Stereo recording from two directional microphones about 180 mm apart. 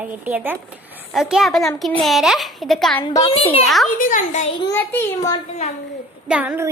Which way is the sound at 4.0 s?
45° left (ahead or behind).